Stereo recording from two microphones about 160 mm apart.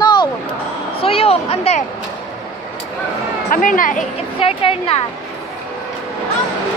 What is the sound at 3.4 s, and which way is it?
Speech, 55° left (ahead or behind).